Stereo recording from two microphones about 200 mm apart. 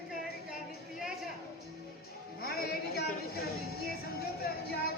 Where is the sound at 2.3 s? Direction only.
50° left (ahead or behind).